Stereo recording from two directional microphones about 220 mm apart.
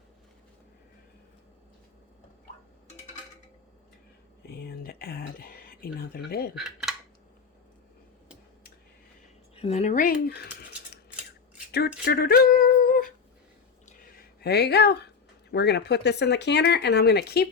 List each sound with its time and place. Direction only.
4.4 s speech: 45° left (ahead or behind)
9.6 s cutlery: 30° left (ahead or behind); by 11.0 s 45° left (ahead or behind)
12.0 s a sound: 45° left (ahead or behind)
13.8 s speech: 45° left (ahead or behind)